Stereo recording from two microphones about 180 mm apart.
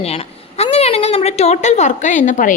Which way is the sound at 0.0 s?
35° left (ahead or behind).